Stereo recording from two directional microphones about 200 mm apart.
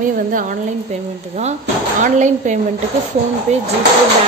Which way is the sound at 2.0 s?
40° right (ahead or behind).